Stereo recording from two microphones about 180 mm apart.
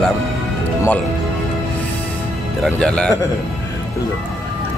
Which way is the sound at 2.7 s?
5° left (ahead or behind).